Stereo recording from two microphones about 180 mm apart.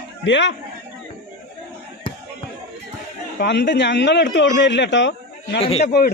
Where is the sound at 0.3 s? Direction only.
85° left.